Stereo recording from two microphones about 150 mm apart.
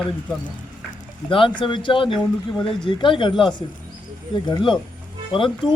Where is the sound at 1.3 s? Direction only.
35° left (ahead or behind).